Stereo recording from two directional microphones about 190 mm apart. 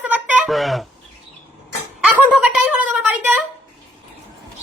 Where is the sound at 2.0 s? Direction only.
10° right (ahead or behind).